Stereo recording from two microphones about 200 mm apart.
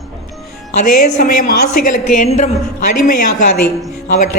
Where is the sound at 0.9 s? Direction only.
45° left (ahead or behind).